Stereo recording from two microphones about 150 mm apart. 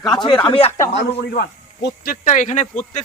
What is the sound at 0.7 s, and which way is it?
Speech, 20° left (ahead or behind).